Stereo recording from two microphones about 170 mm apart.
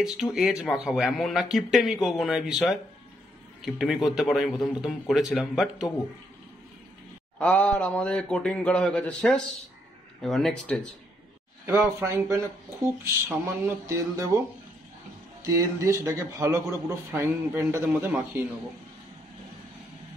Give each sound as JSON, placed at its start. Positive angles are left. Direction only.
{"t": 0.0, "sound": "speech", "side_deg": -5}
{"t": 7.3, "sound": "a man's voice", "side_deg": 5}
{"t": 11.6, "sound": "speech", "side_deg": -15}
{"t": 15.4, "sound": "speech", "side_deg": -20}